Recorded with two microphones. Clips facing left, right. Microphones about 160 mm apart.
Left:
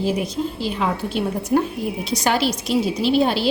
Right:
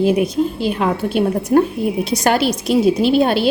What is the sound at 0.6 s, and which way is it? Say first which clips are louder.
A woman's voice: right 5 dB; 55° right (ahead or behind).